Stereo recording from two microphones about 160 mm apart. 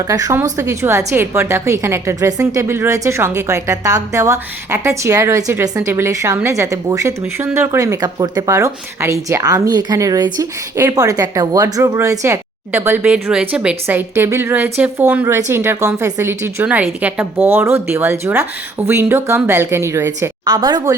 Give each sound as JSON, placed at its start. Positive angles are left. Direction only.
{"t": 0.1, "sound": "a woman's voice", "side_deg": -20}